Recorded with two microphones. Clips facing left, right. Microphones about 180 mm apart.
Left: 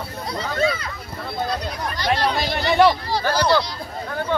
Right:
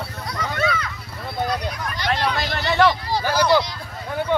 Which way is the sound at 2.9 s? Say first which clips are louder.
Left 1 dB; 15° right (ahead or behind).